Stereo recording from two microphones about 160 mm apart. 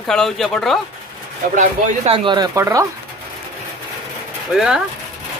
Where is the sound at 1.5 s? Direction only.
50° right (ahead or behind).